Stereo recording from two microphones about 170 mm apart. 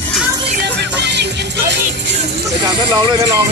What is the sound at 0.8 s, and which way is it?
Music, 90° right.